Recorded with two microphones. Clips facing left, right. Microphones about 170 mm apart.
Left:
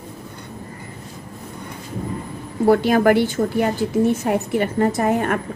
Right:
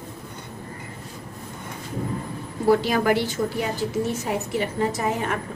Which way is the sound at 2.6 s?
55° left (ahead or behind).